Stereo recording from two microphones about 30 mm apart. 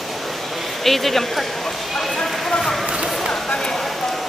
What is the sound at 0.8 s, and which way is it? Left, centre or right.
Speech, centre.